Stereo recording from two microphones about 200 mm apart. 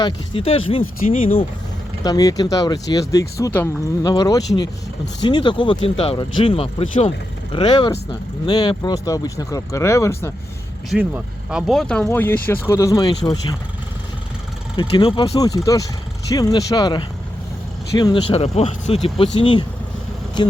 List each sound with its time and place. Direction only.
0.0 s speech: 25° left (ahead or behind)
10.8 s speech: 5° right (ahead or behind); by 13.6 s 20° left (ahead or behind)
14.8 s speech: 25° left (ahead or behind)